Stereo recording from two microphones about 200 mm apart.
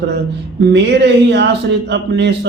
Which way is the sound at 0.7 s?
60° right (ahead or behind).